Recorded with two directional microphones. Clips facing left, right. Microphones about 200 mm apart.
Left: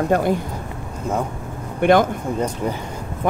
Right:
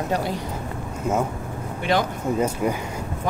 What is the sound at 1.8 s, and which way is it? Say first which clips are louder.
Speech: left 8 dB; 50° left (ahead or behind).